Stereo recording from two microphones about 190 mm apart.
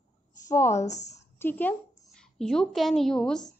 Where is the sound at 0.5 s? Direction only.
15° left (ahead or behind).